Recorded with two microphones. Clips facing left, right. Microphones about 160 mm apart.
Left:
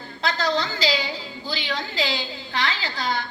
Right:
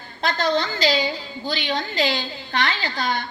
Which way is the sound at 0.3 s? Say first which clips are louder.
Right 2 dB; 60° right (ahead or behind).